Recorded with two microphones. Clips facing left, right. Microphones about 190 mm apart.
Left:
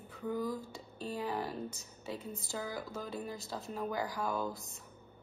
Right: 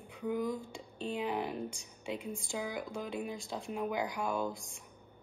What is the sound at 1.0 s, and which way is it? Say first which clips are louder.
Speech: right 2 dB; 20° right (ahead or behind).